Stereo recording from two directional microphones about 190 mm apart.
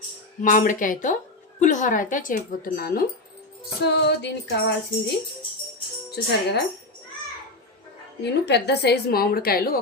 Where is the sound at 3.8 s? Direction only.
60° left (ahead or behind).